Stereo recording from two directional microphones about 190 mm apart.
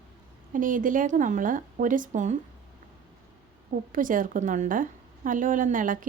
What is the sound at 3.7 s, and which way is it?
A woman's voice, 45° right (ahead or behind).